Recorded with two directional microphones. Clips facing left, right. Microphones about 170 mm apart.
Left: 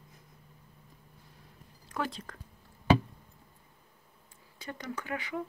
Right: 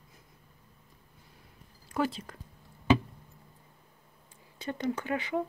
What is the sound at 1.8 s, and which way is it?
Speech, 10° right (ahead or behind).